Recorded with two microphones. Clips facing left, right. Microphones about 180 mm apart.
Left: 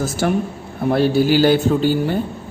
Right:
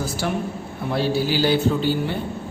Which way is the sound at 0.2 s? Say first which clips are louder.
Left 7 dB; 50° left (ahead or behind).